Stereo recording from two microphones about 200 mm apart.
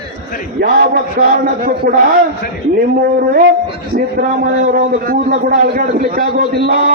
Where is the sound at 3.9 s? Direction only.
45° right (ahead or behind).